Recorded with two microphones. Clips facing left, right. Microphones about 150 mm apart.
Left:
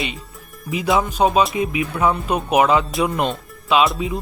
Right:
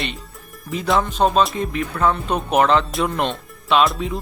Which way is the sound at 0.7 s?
5° left (ahead or behind).